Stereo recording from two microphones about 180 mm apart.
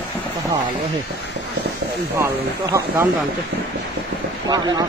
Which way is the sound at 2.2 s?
15° right (ahead or behind).